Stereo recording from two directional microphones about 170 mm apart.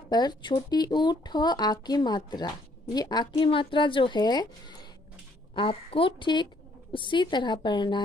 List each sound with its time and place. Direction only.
0.1 s a woman's voice: 25° left (ahead or behind)